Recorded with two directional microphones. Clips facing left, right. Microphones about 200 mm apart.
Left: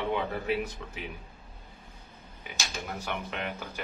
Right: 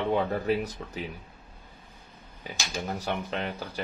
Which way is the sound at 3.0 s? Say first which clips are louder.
Right 1 dB; 35° right (ahead or behind).